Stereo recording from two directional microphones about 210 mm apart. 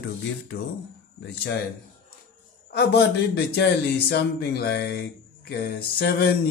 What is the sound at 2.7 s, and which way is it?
A man's voice, 50° left (ahead or behind).